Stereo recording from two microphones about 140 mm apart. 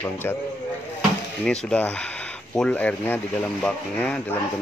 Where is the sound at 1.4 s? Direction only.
5° left (ahead or behind).